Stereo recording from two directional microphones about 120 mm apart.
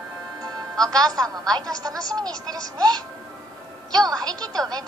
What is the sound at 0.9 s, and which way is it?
Speech, 30° right (ahead or behind).